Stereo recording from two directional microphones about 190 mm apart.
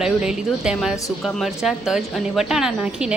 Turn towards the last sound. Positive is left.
turn(degrees=-5)  # may be behind; listen again after turning